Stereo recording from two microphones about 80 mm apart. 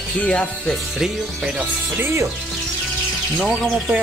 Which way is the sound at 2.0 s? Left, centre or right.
Right.